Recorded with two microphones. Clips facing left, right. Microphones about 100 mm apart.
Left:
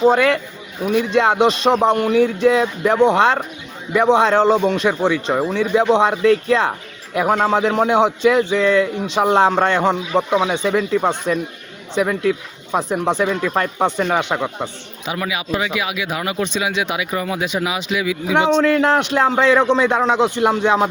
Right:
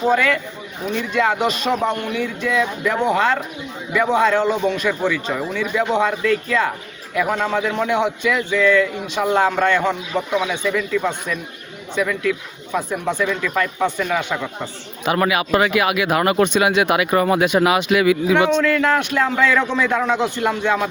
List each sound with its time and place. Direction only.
1.1 s a man's voice: 25° left (ahead or behind)
15.0 s speech: 55° right (ahead or behind)
18.5 s a man's voice: 30° left (ahead or behind)